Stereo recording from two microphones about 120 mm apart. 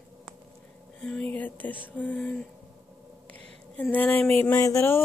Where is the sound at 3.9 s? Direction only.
15° left (ahead or behind).